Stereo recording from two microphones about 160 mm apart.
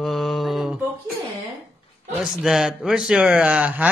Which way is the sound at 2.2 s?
5° right (ahead or behind).